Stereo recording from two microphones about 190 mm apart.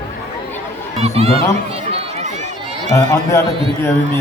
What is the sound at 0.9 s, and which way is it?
Speech, 30° right (ahead or behind).